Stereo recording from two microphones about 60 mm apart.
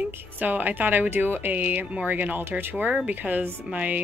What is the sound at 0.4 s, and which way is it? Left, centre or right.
Speech, right.